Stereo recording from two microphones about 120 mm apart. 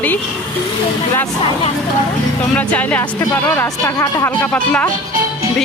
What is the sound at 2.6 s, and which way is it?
Speech, 10° left (ahead or behind).